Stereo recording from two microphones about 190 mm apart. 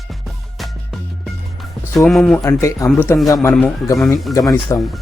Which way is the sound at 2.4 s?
15° left (ahead or behind).